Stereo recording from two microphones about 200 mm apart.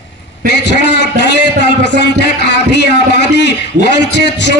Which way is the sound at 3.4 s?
60° left (ahead or behind).